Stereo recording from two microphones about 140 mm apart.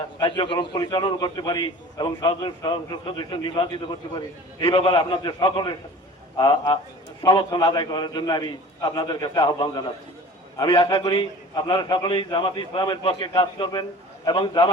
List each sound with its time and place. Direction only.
0.2 s a man's voice: 35° left (ahead or behind)